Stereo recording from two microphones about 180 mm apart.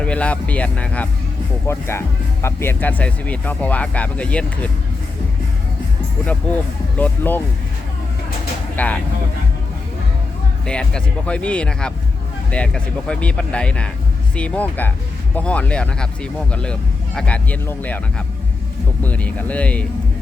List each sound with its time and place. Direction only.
0.0 s speech: 5° left (ahead or behind)
6.9 s speech: 10° left (ahead or behind)
8.7 s speech: 10° left (ahead or behind)
10.7 s speech: 5° left (ahead or behind)
19.0 s speech: 10° left (ahead or behind)